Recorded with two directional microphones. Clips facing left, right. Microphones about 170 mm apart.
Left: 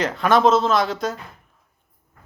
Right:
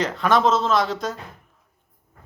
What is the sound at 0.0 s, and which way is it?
Speech, 5° left (ahead or behind).